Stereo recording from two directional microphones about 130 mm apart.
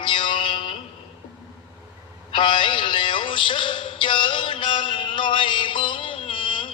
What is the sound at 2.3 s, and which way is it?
Music, 40° left (ahead or behind).